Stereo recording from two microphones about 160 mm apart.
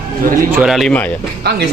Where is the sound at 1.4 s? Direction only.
90° right.